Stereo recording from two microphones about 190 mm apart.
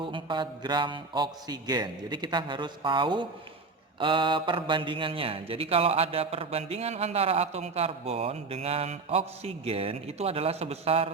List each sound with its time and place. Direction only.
0.0 s speech: 25° right (ahead or behind)